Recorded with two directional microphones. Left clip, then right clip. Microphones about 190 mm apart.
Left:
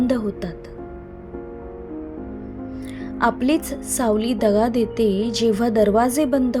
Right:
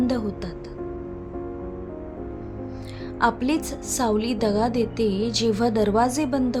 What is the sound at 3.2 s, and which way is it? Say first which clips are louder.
A woman's voice: left 3 dB; 15° left (ahead or behind).